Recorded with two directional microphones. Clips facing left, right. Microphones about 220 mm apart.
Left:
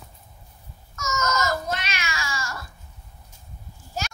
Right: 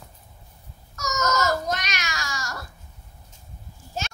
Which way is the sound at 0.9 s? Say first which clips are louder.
Right 1 dB; 40° right (ahead or behind).